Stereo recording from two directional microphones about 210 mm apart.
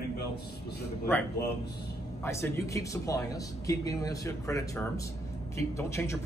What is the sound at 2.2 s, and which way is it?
A man's voice, 15° left (ahead or behind).